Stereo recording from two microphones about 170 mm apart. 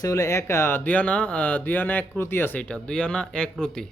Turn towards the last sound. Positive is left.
turn(degrees=5)  # may be behind; listen again after turning